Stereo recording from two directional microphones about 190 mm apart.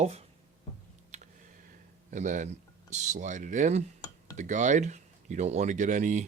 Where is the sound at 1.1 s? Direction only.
35° right (ahead or behind).